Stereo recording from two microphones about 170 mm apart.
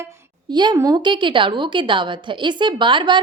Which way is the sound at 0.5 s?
25° right (ahead or behind).